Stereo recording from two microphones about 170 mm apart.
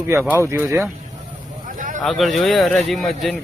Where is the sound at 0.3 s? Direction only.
15° right (ahead or behind).